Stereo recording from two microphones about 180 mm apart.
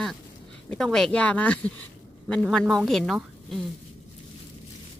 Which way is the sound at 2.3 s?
5° left (ahead or behind).